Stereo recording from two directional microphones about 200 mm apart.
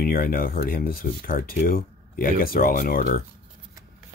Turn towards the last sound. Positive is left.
turn(degrees=45)  # may be behind; listen again after turning